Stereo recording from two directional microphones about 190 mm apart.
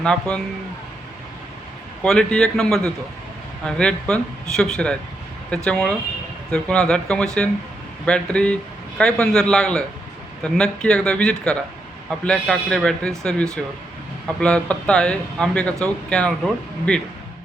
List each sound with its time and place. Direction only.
0.0 s speech: 5° left (ahead or behind)
2.0 s speech: 5° left (ahead or behind)